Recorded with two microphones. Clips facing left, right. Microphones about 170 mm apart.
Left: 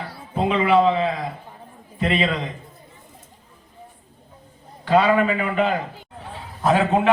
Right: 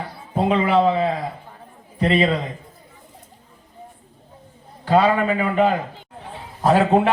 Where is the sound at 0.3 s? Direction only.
35° right (ahead or behind).